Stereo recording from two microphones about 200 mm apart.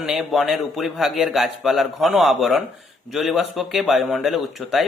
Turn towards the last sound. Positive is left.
turn(degrees=0)  # may be behind; listen again after turning